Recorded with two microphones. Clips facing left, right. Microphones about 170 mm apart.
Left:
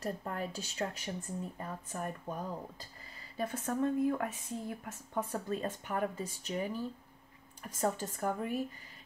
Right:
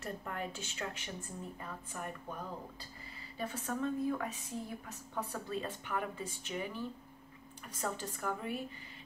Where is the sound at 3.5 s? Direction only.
50° left (ahead or behind).